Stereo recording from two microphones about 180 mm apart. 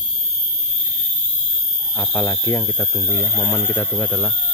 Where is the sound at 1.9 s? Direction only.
5° left (ahead or behind).